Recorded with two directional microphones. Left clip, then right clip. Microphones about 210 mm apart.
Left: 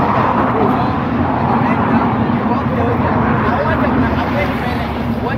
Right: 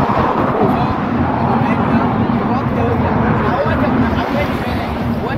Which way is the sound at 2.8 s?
45° right (ahead or behind).